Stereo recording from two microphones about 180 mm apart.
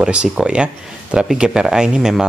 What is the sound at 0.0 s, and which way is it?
Speech, 5° right (ahead or behind).